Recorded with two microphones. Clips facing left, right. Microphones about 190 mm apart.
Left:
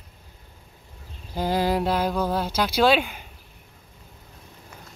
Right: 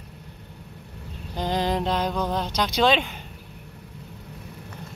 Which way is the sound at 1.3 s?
5° left (ahead or behind).